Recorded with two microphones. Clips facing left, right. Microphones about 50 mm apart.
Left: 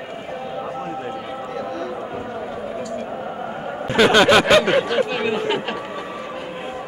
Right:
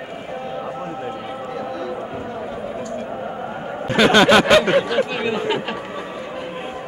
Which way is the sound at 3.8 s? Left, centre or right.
Centre.